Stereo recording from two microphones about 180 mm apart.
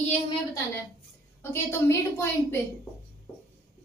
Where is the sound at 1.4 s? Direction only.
15° left (ahead or behind).